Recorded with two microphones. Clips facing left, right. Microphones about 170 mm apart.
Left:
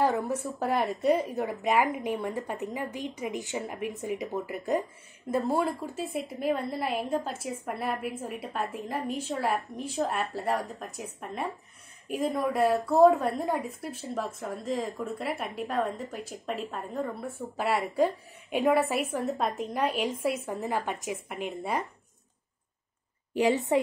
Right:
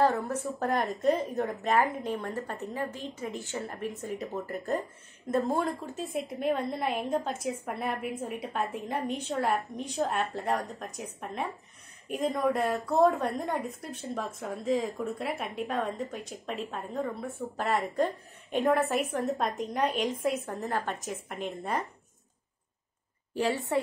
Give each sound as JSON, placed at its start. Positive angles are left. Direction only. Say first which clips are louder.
{"t": 0.0, "sound": "a woman's voice", "louder": "even", "side_deg": 10}
{"t": 5.3, "sound": "a woman's voice", "louder": "left 1 dB", "side_deg": 0}
{"t": 20.6, "sound": "a woman's voice", "louder": "left 2 dB", "side_deg": 10}
{"t": 21.3, "sound": "a woman's voice", "louder": "even", "side_deg": 0}
{"t": 23.3, "sound": "a woman's voice", "louder": "left 4 dB", "side_deg": 15}